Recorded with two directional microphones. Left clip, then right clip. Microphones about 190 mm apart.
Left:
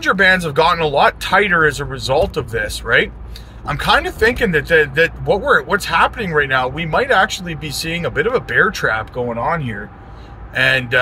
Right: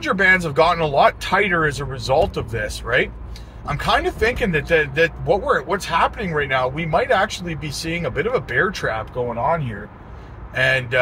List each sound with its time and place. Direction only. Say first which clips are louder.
0.0 s speech: left 3 dB; 20° left (ahead or behind)
10.5 s speech: left 4 dB; 20° left (ahead or behind)